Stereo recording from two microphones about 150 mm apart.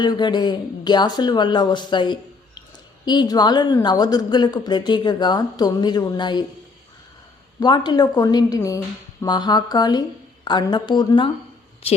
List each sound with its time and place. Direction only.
0.0 s a woman's voice: 30° left (ahead or behind)
7.6 s a woman's voice: 30° left (ahead or behind)